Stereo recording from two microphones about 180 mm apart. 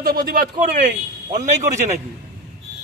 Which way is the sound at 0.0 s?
55° right (ahead or behind).